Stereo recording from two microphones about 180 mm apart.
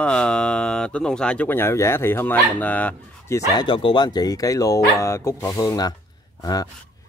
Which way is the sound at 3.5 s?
25° left (ahead or behind).